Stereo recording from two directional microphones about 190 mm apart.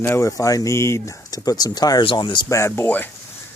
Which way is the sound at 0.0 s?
15° left (ahead or behind).